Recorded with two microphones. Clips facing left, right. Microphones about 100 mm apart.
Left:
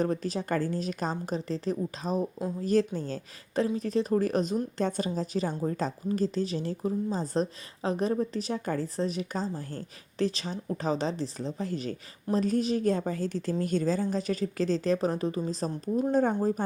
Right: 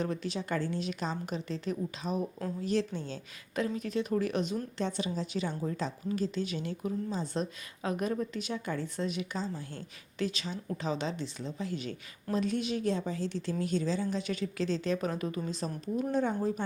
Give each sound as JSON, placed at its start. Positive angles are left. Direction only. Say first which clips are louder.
{"t": 0.0, "sound": "a woman's voice", "louder": "left 5 dB", "side_deg": 40}